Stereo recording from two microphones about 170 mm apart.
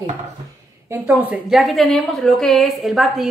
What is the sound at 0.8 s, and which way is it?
A woman's voice, 15° right (ahead or behind).